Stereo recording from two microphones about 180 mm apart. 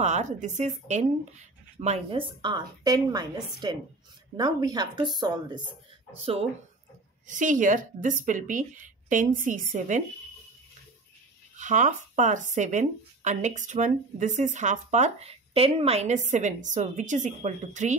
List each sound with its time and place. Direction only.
0.0 s a woman's voice: 40° right (ahead or behind); by 5.6 s 25° right (ahead or behind)
6.1 s speech: 35° right (ahead or behind)
7.2 s speech: 45° right (ahead or behind)
11.5 s speech: 45° right (ahead or behind)